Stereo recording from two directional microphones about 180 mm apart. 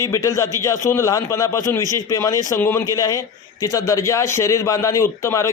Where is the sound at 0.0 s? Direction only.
20° left (ahead or behind).